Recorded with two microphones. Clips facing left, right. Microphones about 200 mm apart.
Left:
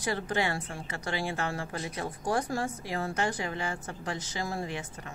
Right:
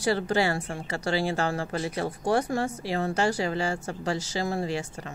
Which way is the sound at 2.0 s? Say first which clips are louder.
Right 4 dB; 70° right (ahead or behind).